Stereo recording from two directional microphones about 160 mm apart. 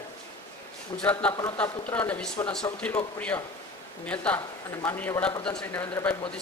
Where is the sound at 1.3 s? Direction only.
30° left (ahead or behind).